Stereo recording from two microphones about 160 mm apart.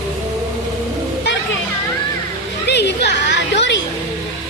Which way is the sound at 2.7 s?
90° left.